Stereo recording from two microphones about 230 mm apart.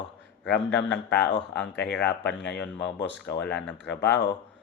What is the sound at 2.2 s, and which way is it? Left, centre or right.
Speech, left.